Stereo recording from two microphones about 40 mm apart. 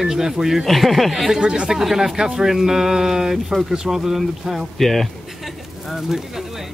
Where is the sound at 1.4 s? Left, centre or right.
Right.